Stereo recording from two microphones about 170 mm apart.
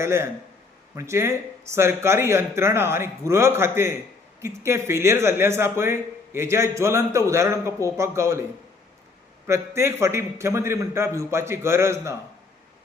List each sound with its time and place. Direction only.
0.0 s speech: 15° right (ahead or behind)
9.5 s speech: 15° right (ahead or behind)